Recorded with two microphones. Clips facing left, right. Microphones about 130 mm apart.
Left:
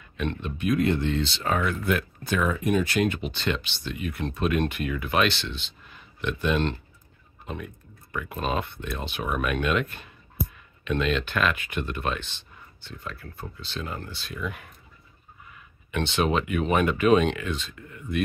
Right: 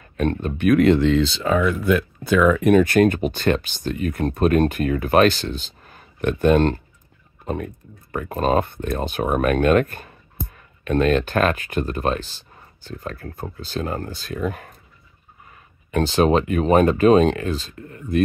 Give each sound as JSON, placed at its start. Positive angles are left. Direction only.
{"t": 0.0, "sound": "speech", "side_deg": -45}
{"t": 2.4, "sound": "speech", "side_deg": -70}
{"t": 15.9, "sound": "speech", "side_deg": -40}